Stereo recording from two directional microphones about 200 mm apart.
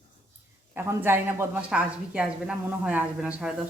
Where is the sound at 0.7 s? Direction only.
10° right (ahead or behind).